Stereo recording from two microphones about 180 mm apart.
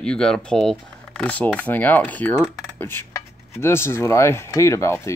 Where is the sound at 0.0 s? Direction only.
5° left (ahead or behind).